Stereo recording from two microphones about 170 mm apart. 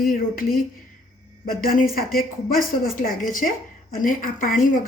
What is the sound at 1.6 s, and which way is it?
A woman's voice, 55° left (ahead or behind).